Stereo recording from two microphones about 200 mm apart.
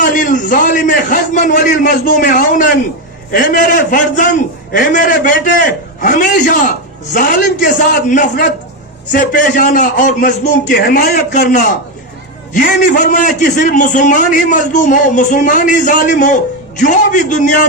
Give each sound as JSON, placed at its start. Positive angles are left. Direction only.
{"t": 0.0, "sound": "a man's voice", "side_deg": 40}
{"t": 10.8, "sound": "a man's voice", "side_deg": 55}